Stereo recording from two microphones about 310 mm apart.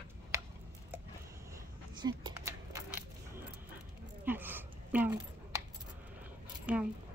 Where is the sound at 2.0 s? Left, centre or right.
Centre.